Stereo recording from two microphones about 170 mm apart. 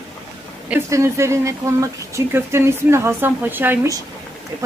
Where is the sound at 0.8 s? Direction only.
15° right (ahead or behind).